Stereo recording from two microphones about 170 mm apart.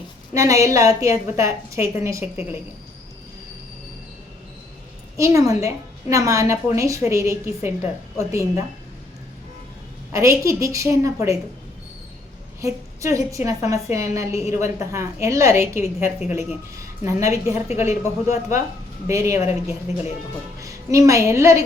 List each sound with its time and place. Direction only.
0.3 s a woman's voice: 20° right (ahead or behind)
5.1 s a woman's voice: 20° right (ahead or behind)
10.1 s a woman's voice: 15° right (ahead or behind)
12.6 s a woman's voice: 20° right (ahead or behind)